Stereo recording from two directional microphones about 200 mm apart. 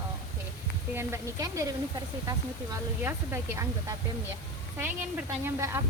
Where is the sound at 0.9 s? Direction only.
10° right (ahead or behind).